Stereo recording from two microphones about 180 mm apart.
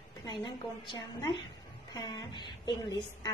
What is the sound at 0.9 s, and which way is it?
A woman's voice, 20° left (ahead or behind).